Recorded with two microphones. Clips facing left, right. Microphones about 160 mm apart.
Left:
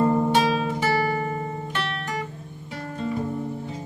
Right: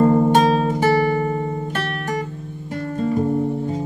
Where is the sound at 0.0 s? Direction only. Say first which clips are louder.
Right 6 dB; 45° right (ahead or behind).